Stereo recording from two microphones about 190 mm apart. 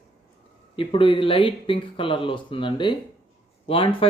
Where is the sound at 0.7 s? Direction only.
25° left (ahead or behind).